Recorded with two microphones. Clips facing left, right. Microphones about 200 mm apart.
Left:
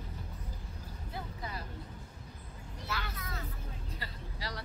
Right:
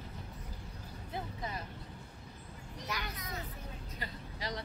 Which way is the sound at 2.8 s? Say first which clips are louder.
Left 1 dB; 15° right (ahead or behind).